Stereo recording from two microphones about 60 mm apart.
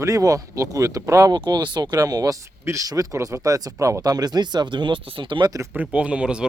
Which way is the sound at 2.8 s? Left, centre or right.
Right.